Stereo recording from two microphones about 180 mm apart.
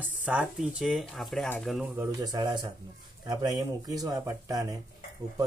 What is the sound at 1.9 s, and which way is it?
Speech, 20° right (ahead or behind).